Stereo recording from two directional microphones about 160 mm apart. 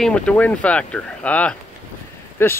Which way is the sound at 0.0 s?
5° left (ahead or behind).